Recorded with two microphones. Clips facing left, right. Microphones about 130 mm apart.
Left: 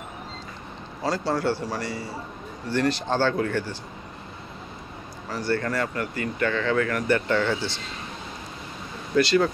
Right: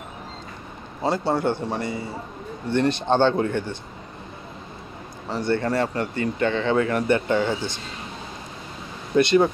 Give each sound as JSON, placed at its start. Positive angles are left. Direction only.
{"t": 1.0, "sound": "speech", "side_deg": -20}
{"t": 5.3, "sound": "speech", "side_deg": -25}
{"t": 9.1, "sound": "speech", "side_deg": -20}